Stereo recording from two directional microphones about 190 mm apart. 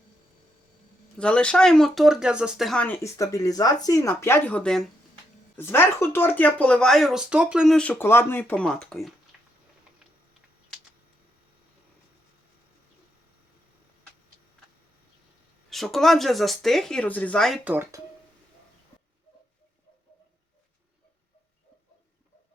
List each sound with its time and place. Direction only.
1.2 s speech: 5° left (ahead or behind)
9.3 s a sound: 5° right (ahead or behind)
15.7 s speech: centre (ahead or behind)
17.7 s speech: 10° right (ahead or behind)